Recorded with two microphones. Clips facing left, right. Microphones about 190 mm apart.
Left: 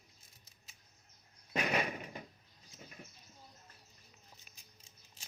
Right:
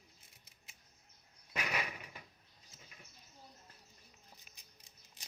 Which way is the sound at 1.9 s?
55° left (ahead or behind).